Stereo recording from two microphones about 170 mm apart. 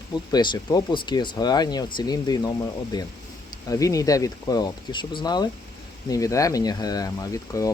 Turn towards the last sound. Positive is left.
turn(degrees=20)  # may be behind; listen again after turning